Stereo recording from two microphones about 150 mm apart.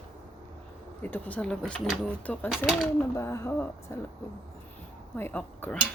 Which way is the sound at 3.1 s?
20° left (ahead or behind).